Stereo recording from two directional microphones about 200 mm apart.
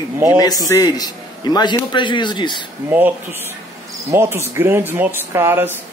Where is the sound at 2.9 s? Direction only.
10° right (ahead or behind).